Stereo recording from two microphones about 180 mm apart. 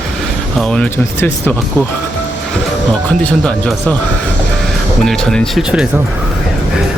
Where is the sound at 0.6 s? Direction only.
5° left (ahead or behind).